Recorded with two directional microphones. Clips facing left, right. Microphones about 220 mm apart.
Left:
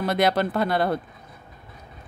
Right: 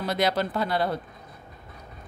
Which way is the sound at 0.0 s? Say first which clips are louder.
Left 4 dB; 55° left (ahead or behind).